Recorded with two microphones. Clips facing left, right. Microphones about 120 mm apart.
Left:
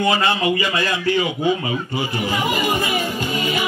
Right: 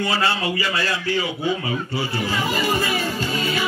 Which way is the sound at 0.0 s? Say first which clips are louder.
Left 4 dB; 15° left (ahead or behind).